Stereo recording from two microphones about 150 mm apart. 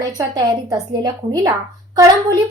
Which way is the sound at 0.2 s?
25° right (ahead or behind).